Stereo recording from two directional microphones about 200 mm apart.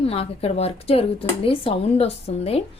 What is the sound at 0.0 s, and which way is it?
A woman's voice, 30° left (ahead or behind).